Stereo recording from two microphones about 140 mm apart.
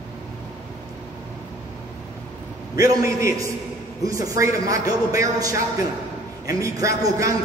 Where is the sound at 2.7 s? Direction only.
25° right (ahead or behind).